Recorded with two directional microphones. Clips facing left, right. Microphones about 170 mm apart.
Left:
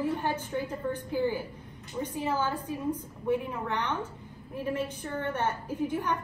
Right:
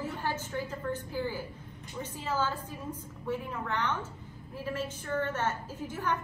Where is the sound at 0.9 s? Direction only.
15° left (ahead or behind).